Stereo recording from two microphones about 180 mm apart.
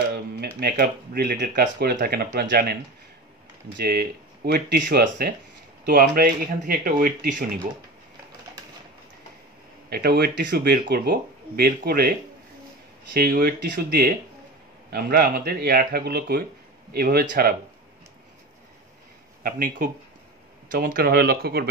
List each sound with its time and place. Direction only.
0.6 s speech: 60° right (ahead or behind)
3.8 s speech: 60° right (ahead or behind)
5.9 s speech: 50° right (ahead or behind)
9.8 s speech: 60° right (ahead or behind)
20.7 s speech: 50° right (ahead or behind)